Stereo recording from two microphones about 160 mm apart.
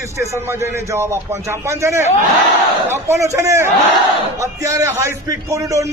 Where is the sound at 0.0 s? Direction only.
20° right (ahead or behind).